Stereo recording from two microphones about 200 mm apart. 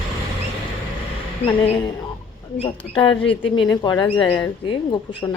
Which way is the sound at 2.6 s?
25° left (ahead or behind).